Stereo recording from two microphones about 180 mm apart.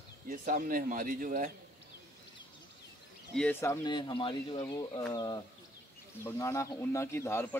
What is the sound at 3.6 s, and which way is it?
A man's voice, 20° left (ahead or behind).